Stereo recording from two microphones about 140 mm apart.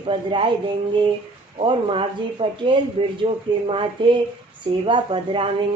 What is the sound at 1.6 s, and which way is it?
Speech, 40° right (ahead or behind).